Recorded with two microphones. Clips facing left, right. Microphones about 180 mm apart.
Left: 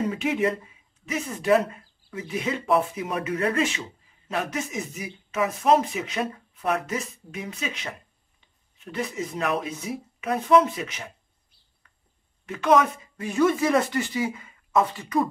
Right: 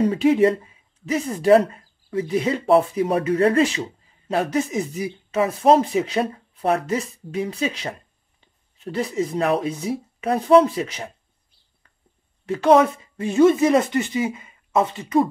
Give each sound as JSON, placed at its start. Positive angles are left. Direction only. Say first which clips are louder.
{"t": 0.0, "sound": "speech", "louder": "right 8 dB", "side_deg": -35}
{"t": 12.4, "sound": "speech", "louder": "right 5 dB", "side_deg": -30}